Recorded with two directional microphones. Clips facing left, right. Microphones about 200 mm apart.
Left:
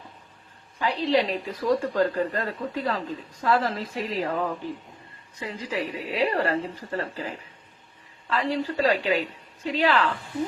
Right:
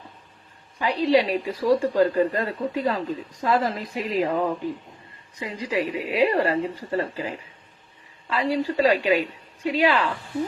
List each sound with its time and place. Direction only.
0.8 s a woman's voice: 10° right (ahead or behind)
5.4 s a woman's voice: 15° right (ahead or behind)